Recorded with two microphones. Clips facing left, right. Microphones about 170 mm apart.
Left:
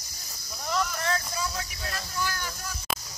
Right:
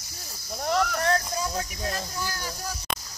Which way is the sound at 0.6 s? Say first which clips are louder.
Right 5 dB; 60° right (ahead or behind).